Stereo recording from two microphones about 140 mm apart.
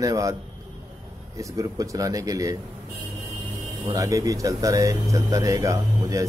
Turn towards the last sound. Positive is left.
turn(degrees=-25)  # may be behind; listen again after turning